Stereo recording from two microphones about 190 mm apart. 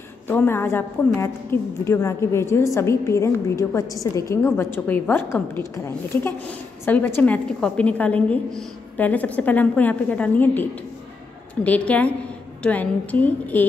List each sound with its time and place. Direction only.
0.3 s a woman's voice: 10° left (ahead or behind)